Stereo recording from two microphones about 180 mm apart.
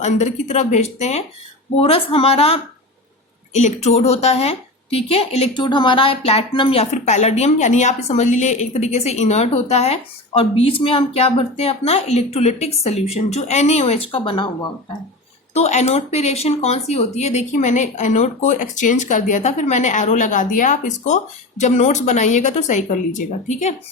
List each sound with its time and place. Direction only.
0.0 s a woman's voice: 40° left (ahead or behind)
15.5 s a woman's voice: 40° left (ahead or behind)